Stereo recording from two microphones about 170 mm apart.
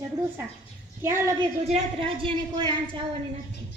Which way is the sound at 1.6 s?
35° right (ahead or behind).